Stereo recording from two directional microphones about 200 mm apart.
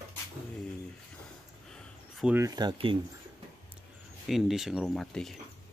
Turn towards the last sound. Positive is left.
turn(degrees=0)  # may be behind; listen again after turning